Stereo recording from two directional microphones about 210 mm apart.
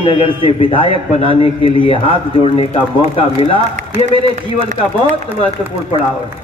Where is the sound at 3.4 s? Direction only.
30° left (ahead or behind).